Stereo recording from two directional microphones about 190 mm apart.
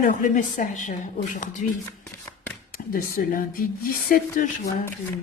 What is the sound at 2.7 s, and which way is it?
Speech, 50° left (ahead or behind).